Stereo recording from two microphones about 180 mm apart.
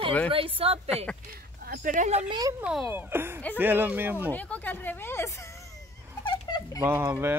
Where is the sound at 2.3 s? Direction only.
20° right (ahead or behind).